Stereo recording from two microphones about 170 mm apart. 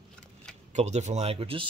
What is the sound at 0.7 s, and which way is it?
Speech, 40° right (ahead or behind).